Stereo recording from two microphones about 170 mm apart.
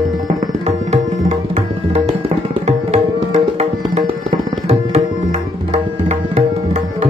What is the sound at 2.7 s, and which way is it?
Tabla, 40° right (ahead or behind).